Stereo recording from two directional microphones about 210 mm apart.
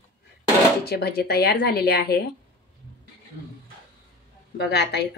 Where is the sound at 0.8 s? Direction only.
50° left (ahead or behind).